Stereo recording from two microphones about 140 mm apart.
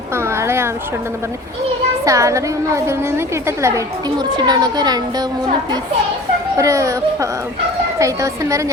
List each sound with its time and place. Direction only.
0.2 s a sound: 20° right (ahead or behind)
2.0 s a woman's voice: 20° right (ahead or behind)
6.6 s a woman's voice: 20° right (ahead or behind)